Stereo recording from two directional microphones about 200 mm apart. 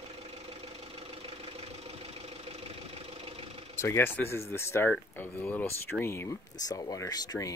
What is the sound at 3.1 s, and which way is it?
Vehicle, 30° right (ahead or behind).